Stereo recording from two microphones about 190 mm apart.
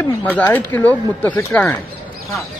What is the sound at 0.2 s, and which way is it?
Speech, 10° left (ahead or behind).